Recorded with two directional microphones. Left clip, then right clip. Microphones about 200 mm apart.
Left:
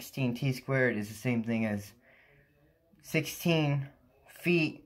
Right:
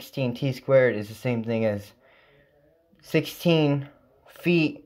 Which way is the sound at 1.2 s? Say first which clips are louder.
Right 5 dB; 45° right (ahead or behind).